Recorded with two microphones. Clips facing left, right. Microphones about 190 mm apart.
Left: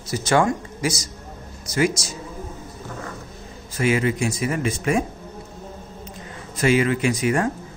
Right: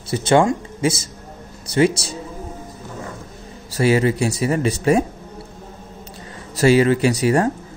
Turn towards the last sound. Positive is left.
turn(degrees=-35)  # may be behind; listen again after turning